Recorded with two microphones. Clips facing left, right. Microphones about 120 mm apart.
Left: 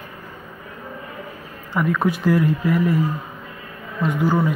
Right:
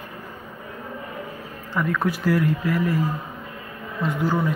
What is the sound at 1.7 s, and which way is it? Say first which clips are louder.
Speech: left 3 dB; 20° left (ahead or behind).